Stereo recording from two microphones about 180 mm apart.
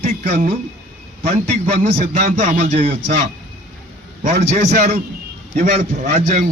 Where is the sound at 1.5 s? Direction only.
50° right (ahead or behind).